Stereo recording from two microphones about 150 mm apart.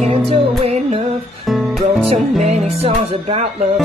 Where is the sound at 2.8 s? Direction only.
45° right (ahead or behind).